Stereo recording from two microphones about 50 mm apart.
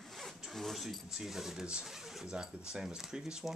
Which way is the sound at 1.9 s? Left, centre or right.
Centre.